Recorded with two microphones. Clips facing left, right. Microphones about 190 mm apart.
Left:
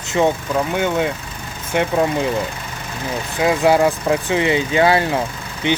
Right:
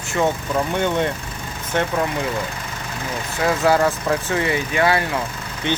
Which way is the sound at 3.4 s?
15° left (ahead or behind).